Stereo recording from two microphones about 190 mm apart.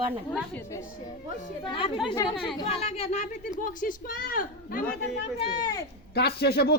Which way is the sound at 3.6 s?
45° left (ahead or behind).